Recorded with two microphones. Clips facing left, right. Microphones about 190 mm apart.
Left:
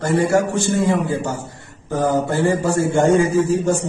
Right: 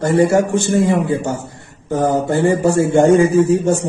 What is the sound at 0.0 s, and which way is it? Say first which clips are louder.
A man's voice: right 4 dB; 25° right (ahead or behind).